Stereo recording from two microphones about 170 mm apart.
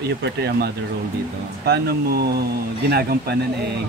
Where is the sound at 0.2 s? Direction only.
75° right (ahead or behind).